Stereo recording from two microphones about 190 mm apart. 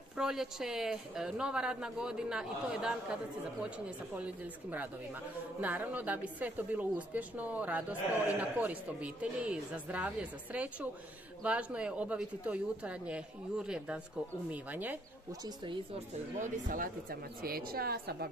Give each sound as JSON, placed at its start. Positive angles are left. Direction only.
{"t": 0.2, "sound": "speech", "side_deg": -5}
{"t": 15.4, "sound": "speech", "side_deg": -25}
{"t": 16.3, "sound": "a woman's voice", "side_deg": -45}